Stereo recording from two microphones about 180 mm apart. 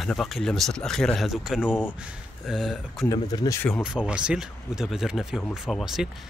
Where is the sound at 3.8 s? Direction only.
5° right (ahead or behind).